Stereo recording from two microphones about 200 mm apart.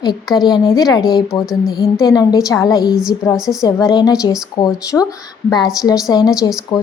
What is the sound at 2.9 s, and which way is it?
Speech, 5° right (ahead or behind).